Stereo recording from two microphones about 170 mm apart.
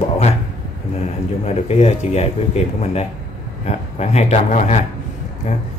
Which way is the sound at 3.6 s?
40° left (ahead or behind).